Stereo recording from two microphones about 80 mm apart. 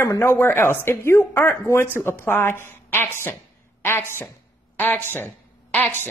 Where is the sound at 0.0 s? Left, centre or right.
Left.